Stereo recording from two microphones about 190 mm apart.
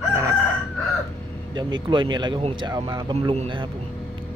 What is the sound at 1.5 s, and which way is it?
Speech, 25° right (ahead or behind).